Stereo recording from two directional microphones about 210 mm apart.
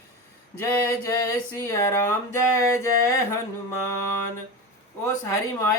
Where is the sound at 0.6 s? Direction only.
15° left (ahead or behind).